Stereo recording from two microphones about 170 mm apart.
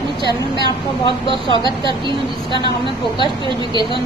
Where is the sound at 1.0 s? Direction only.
30° left (ahead or behind).